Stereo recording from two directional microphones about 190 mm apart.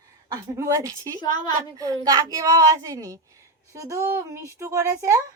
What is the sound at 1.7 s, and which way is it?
A woman's voice, 20° right (ahead or behind).